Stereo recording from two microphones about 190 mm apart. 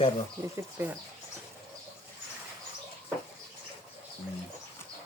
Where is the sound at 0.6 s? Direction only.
15° right (ahead or behind).